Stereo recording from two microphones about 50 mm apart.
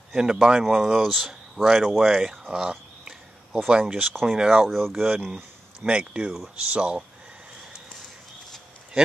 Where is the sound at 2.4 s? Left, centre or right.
Centre.